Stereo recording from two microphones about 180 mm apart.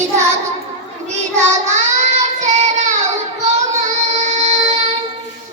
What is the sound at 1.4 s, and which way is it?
Child singing, 40° right (ahead or behind).